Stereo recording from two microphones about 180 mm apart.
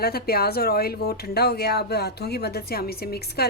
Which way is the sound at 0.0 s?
60° left (ahead or behind).